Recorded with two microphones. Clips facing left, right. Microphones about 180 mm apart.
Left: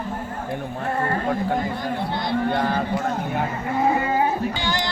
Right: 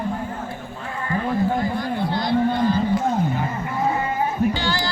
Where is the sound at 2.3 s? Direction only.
60° left (ahead or behind).